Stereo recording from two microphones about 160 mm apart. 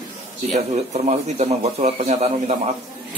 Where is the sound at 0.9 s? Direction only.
45° right (ahead or behind).